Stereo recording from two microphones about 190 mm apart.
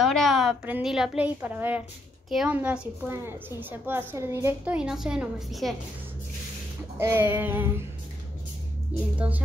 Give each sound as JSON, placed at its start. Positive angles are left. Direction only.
{"t": 0.0, "sound": "a woman's voice", "side_deg": 0}
{"t": 7.0, "sound": "a woman's voice", "side_deg": -10}